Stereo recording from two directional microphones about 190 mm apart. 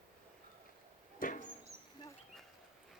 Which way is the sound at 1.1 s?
45° left (ahead or behind).